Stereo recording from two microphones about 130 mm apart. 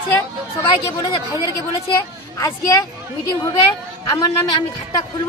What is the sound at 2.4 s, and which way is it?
A woman's voice, 25° left (ahead or behind).